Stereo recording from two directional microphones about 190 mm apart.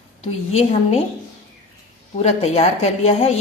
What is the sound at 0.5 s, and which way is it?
Speech, 30° left (ahead or behind).